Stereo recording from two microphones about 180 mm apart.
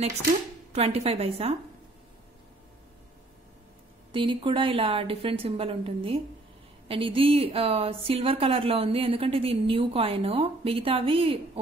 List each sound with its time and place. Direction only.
0.7 s a woman's voice: 35° right (ahead or behind)
4.1 s a woman's voice: 30° right (ahead or behind)